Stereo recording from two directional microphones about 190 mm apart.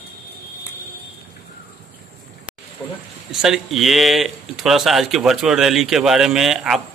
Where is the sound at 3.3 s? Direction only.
Centre (ahead or behind).